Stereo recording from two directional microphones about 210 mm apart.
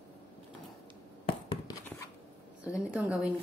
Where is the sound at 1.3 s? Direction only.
25° left (ahead or behind).